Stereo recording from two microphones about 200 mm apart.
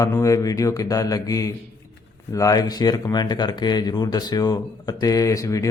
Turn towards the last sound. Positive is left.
turn(degrees=15)  # may be behind; listen again after turning